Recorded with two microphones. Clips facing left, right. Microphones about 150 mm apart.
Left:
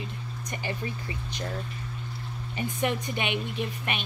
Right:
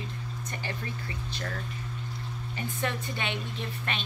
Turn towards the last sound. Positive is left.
turn(degrees=15)  # may be behind; listen again after turning